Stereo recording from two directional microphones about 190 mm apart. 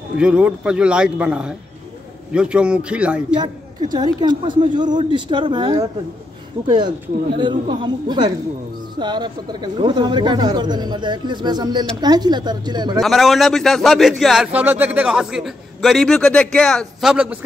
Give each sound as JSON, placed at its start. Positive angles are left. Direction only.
{"t": 0.2, "sound": "a man's voice", "side_deg": -5}
{"t": 3.9, "sound": "speech", "side_deg": -25}
{"t": 13.0, "sound": "a man's voice", "side_deg": 0}